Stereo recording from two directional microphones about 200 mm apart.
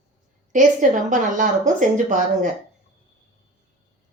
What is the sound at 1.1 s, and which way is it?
Speech, 40° right (ahead or behind).